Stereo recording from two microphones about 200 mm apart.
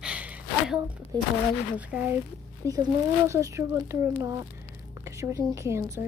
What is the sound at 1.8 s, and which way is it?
Speech, 5° right (ahead or behind).